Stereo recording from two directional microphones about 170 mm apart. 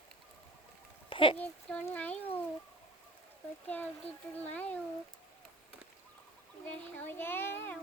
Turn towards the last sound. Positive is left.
turn(degrees=15)  # may be behind; listen again after turning